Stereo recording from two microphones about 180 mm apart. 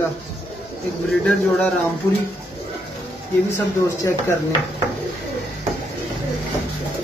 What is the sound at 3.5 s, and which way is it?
Speech, 15° left (ahead or behind).